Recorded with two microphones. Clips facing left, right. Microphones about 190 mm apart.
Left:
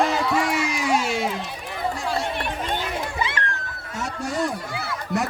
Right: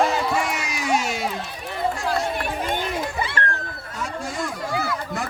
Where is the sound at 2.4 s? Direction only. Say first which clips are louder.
Right 2 dB; 50° right (ahead or behind).